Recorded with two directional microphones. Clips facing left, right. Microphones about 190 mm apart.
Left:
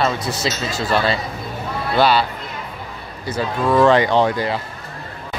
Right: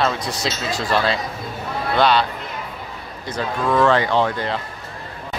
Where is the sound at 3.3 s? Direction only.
5° left (ahead or behind).